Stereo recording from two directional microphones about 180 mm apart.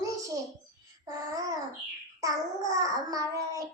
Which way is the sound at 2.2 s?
20° right (ahead or behind).